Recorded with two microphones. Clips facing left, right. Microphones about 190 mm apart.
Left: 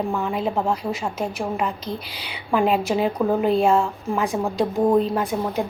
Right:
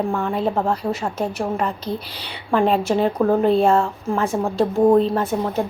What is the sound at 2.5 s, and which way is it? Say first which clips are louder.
Speech: right 2 dB; 5° left (ahead or behind).